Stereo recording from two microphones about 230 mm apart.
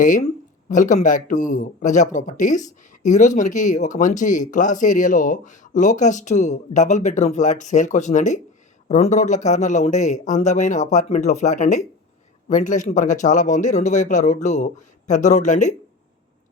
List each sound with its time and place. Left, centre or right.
0.0 s a man's voice: left